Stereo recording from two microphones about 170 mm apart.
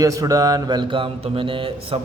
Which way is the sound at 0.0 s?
20° right (ahead or behind).